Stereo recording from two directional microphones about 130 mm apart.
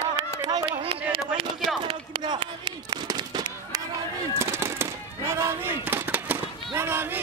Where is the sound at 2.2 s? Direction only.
35° right (ahead or behind).